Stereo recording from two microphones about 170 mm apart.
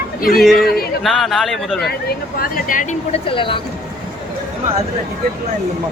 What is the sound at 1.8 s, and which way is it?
Speech, 60° left (ahead or behind).